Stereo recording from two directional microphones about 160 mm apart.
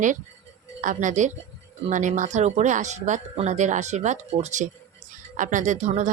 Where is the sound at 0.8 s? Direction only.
50° right (ahead or behind).